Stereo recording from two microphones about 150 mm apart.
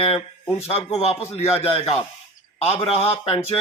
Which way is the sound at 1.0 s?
45° left (ahead or behind).